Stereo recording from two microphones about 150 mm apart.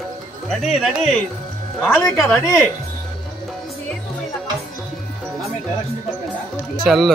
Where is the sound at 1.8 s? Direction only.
15° left (ahead or behind).